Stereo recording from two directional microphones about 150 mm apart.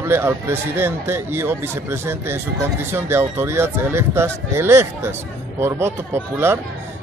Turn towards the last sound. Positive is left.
turn(degrees=-15)  # may be behind; listen again after turning